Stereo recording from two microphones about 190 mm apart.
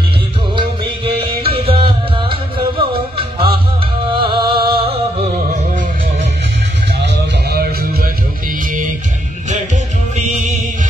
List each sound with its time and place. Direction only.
0.6 s music: 30° right (ahead or behind)
7.0 s music: 55° right (ahead or behind)